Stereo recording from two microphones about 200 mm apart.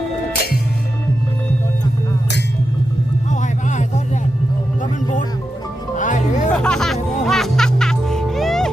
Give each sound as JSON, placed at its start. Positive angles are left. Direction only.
{"t": 3.3, "sound": "vehicle", "side_deg": 40}
{"t": 6.0, "sound": "music", "side_deg": 40}
{"t": 6.6, "sound": "music", "side_deg": 5}